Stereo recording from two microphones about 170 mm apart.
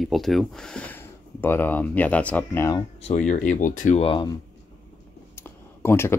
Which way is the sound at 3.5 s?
50° left (ahead or behind).